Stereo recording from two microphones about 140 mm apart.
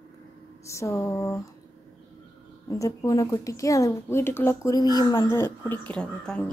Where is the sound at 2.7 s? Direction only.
25° left (ahead or behind).